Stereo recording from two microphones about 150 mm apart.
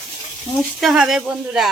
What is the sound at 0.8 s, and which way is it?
Speech, centre (ahead or behind).